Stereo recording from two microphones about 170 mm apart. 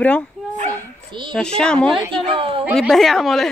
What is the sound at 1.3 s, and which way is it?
Speech, 5° left (ahead or behind).